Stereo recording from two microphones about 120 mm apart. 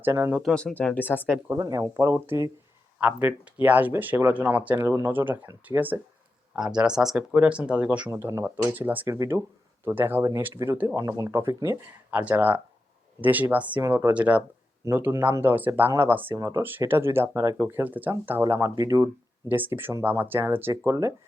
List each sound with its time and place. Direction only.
0.0 s speech: 20° right (ahead or behind)
0.5 s speech: 10° left (ahead or behind)
1.5 s speech: 30° right (ahead or behind); by 8.1 s 10° right (ahead or behind)
8.1 s speech: 25° right (ahead or behind)
9.0 s speech: 25° right (ahead or behind)
16.3 s speech: 30° right (ahead or behind)
16.6 s speech: 15° right (ahead or behind)
19.5 s speech: 15° right (ahead or behind)